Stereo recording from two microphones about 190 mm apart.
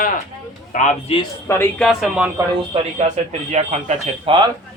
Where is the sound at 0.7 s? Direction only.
40° left (ahead or behind).